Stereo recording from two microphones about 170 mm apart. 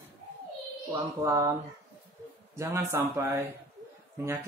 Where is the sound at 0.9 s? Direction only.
20° right (ahead or behind).